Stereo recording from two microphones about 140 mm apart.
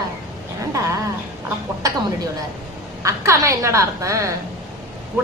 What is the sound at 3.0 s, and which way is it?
A woman's voice, 20° right (ahead or behind).